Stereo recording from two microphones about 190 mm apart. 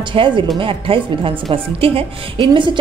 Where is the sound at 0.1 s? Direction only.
25° right (ahead or behind).